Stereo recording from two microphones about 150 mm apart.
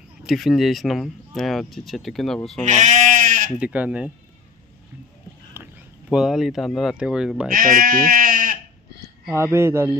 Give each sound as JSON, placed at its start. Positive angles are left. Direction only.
{"t": 0.2, "sound": "speech", "side_deg": 0}
{"t": 2.6, "sound": "sheep", "side_deg": -60}
{"t": 3.5, "sound": "speech", "side_deg": -10}
{"t": 5.5, "sound": "speech", "side_deg": -10}
{"t": 7.4, "sound": "speech", "side_deg": -70}
{"t": 9.3, "sound": "speech", "side_deg": -15}